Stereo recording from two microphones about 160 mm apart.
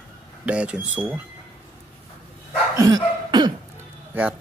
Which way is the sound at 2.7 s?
25° right (ahead or behind).